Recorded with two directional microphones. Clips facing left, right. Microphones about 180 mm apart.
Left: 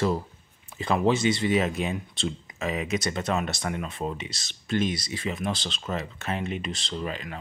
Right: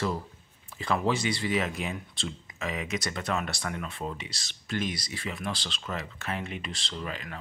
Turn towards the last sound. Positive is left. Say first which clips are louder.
# left 4 dB
turn(degrees=25)  # may be behind; listen again after turning